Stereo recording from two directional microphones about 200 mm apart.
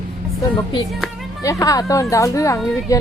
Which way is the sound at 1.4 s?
15° left (ahead or behind).